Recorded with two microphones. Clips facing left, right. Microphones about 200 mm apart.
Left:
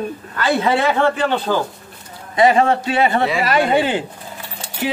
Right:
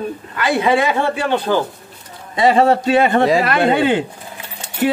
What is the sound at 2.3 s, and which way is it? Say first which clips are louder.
Speech: right 1 dB; 35° right (ahead or behind).